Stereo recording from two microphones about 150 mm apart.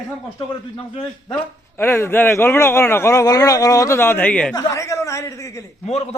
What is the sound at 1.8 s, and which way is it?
A man's voice, 15° left (ahead or behind).